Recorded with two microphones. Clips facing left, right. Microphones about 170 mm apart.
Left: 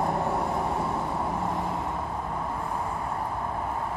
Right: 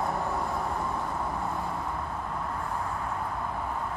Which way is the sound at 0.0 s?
25° left (ahead or behind).